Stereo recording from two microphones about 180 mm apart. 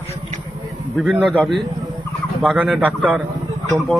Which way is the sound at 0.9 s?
Centre (ahead or behind).